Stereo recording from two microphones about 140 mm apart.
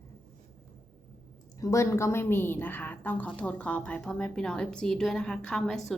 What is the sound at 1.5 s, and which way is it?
A woman's voice, 25° left (ahead or behind).